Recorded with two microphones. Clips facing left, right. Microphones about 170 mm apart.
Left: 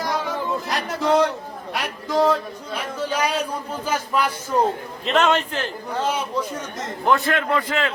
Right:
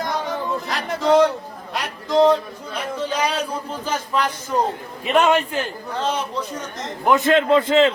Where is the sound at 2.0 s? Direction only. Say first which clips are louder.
Right 4 dB; 10° left (ahead or behind).